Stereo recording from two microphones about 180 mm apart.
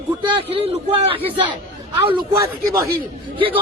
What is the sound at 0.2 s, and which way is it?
A man's voice, 30° right (ahead or behind).